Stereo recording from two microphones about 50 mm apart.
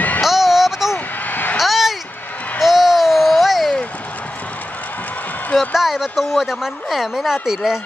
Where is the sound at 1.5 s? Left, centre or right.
Centre.